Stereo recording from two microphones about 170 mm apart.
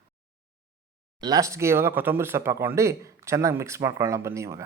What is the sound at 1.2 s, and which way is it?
Speech, 20° right (ahead or behind).